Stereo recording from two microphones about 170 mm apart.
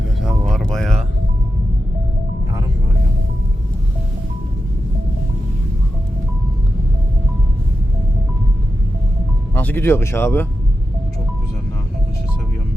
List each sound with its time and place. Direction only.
0.2 s music: centre (ahead or behind)
9.6 s speech: 10° left (ahead or behind)